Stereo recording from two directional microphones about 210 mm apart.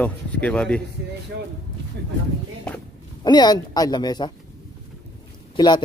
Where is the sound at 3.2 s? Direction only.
20° left (ahead or behind).